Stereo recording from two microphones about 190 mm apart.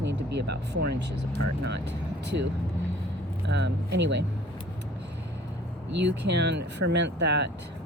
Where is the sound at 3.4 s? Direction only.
65° right (ahead or behind).